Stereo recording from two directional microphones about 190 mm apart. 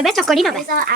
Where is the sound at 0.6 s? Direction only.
50° right (ahead or behind).